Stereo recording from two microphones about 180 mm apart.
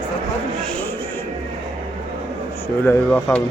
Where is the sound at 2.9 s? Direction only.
10° left (ahead or behind).